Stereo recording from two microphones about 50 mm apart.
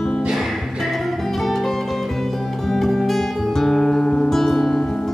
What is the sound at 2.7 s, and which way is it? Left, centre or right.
Music, centre.